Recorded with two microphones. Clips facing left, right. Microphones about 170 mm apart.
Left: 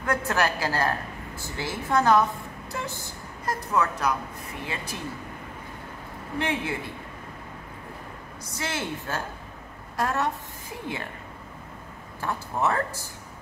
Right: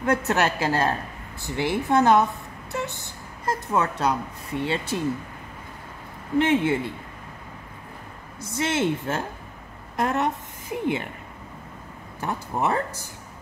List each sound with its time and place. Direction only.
0.0 s a woman's voice: 25° right (ahead or behind)
6.3 s a woman's voice: 25° right (ahead or behind)
8.4 s a woman's voice: 25° right (ahead or behind)
12.2 s a woman's voice: 20° right (ahead or behind)